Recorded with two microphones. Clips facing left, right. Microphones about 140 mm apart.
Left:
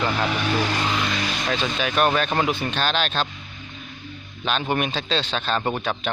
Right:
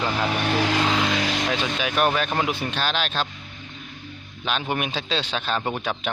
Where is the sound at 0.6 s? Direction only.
90° right.